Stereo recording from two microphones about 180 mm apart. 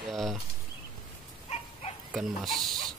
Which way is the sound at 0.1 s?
Centre (ahead or behind).